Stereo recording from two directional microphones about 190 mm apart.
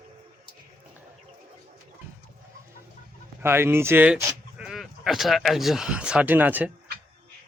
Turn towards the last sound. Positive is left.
turn(degrees=-10)  # may be behind; listen again after turning